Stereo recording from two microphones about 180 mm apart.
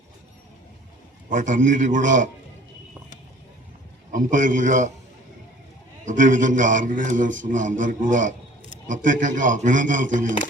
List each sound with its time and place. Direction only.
1.3 s a man's voice: 45° right (ahead or behind)
4.1 s a man's voice: 45° right (ahead or behind)
6.1 s a man's voice: 45° right (ahead or behind)